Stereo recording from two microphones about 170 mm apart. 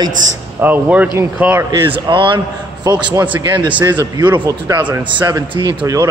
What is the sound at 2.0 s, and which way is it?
Speech, 30° right (ahead or behind).